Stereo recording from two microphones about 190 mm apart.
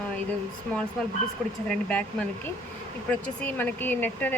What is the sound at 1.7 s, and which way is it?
Speech, 5° left (ahead or behind).